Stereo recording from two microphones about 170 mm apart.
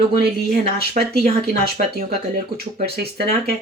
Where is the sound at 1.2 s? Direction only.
65° right (ahead or behind).